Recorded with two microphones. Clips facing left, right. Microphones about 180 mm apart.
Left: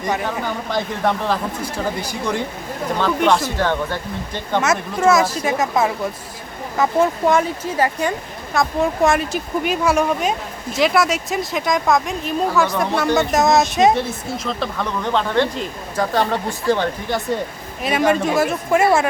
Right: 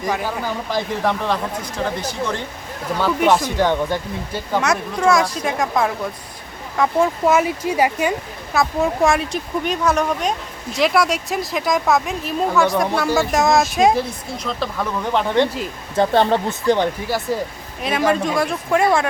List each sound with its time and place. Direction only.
0.0 s a woman's voice: centre (ahead or behind)
2.0 s speech: 10° left (ahead or behind)
3.0 s a woman's voice: 5° right (ahead or behind)
3.6 s a woman's voice: 15° right (ahead or behind)
8.5 s a woman's voice: centre (ahead or behind)
15.1 s speech: 15° right (ahead or behind)
16.0 s speech: 25° right (ahead or behind)
17.1 s a woman's voice: centre (ahead or behind)